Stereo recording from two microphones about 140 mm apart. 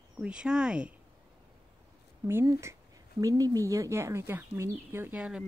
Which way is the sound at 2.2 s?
20° right (ahead or behind).